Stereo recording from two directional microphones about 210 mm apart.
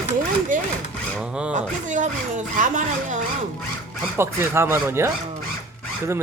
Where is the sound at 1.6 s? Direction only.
35° right (ahead or behind).